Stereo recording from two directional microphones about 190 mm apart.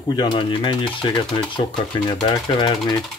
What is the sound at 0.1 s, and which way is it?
Speech, 20° left (ahead or behind).